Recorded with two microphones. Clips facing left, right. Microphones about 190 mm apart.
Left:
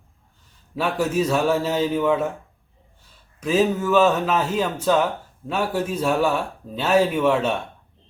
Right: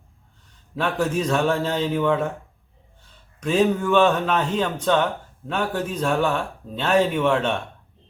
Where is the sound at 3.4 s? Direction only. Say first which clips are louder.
Even; 5° left (ahead or behind).